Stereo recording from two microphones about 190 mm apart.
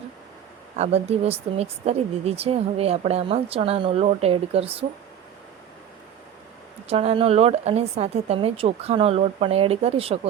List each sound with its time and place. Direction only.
0.8 s speech: 35° right (ahead or behind)
6.8 s speech: 30° right (ahead or behind)